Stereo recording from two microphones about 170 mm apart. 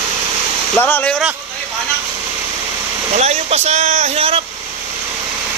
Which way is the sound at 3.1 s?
40° right (ahead or behind).